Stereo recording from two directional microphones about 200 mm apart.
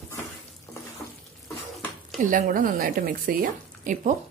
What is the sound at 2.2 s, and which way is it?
A woman's voice, 40° right (ahead or behind).